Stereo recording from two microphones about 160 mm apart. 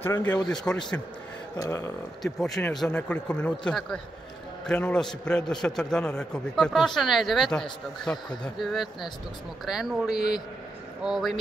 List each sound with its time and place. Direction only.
0.0 s a man's voice: 10° left (ahead or behind)
1.6 s a man's voice: 15° left (ahead or behind)
2.2 s a man's voice: centre (ahead or behind)